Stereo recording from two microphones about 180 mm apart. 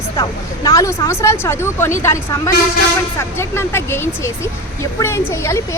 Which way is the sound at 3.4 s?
15° left (ahead or behind).